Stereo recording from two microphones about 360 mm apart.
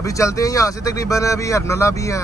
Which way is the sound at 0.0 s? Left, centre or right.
Centre.